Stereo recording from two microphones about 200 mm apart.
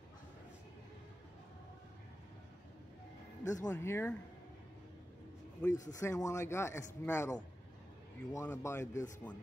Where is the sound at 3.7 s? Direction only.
10° left (ahead or behind).